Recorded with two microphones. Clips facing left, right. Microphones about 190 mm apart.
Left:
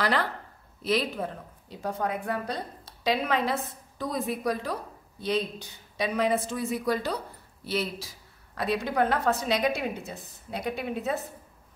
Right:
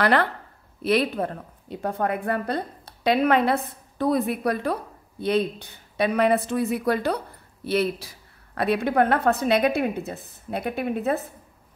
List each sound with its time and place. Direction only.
0.0 s a woman's voice: 60° right (ahead or behind)